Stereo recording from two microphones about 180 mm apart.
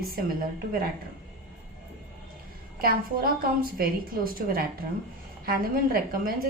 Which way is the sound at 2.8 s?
55° right (ahead or behind).